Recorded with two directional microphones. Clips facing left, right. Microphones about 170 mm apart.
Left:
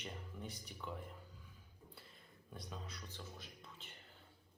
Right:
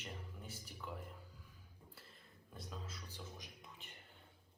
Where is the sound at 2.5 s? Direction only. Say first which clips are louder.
Even; centre (ahead or behind).